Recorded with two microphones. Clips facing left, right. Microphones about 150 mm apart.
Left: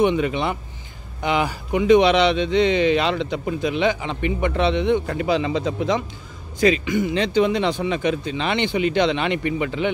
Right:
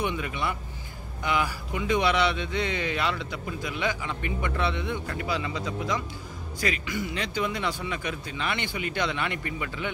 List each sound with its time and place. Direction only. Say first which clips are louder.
0.0 s a man's voice: left 10 dB; 25° left (ahead or behind)